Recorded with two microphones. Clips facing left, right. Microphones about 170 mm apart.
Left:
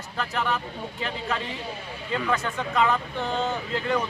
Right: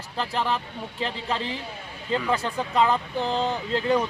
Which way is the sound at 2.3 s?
30° right (ahead or behind).